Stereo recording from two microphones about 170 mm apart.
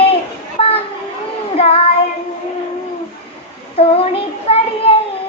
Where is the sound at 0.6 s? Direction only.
35° left (ahead or behind).